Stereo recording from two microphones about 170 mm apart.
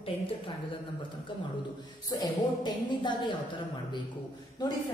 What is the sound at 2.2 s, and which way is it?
A woman's voice, 25° left (ahead or behind).